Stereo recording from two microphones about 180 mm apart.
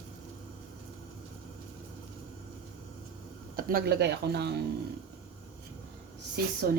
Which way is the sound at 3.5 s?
55° right (ahead or behind).